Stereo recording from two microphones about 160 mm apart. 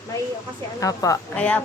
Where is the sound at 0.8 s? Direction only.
20° left (ahead or behind).